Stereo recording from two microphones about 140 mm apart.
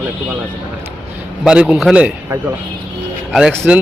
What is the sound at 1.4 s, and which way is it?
A man's voice, 10° right (ahead or behind).